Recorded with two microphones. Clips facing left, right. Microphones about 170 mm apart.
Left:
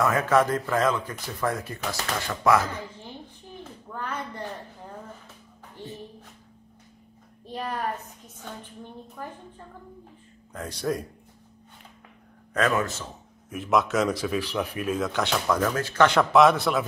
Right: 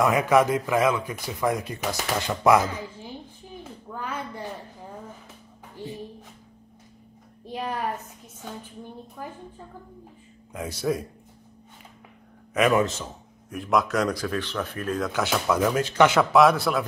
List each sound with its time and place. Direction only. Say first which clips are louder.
0.0 s speech: right 2 dB; 15° right (ahead or behind)
3.9 s a sound: right 1 dB; 10° right (ahead or behind)
7.4 s a sound: right 1 dB; 10° right (ahead or behind)
9.2 s speech: even; 10° right (ahead or behind)
10.5 s speech: right 2 dB; 10° right (ahead or behind)
12.5 s speech: right 4 dB; 15° right (ahead or behind)
13.5 s speech: even; centre (ahead or behind); by 16.2 s 15° right (ahead or behind)
16.2 s speech: even; centre (ahead or behind)